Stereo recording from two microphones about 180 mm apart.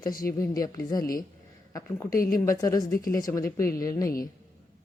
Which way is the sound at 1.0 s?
50° left (ahead or behind).